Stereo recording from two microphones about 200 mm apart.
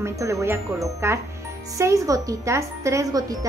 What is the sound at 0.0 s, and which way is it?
Speech, 15° right (ahead or behind).